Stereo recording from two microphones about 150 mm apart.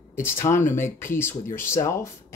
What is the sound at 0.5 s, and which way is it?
Speech, 55° left (ahead or behind).